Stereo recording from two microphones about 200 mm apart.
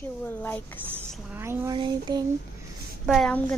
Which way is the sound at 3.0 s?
Centre (ahead or behind).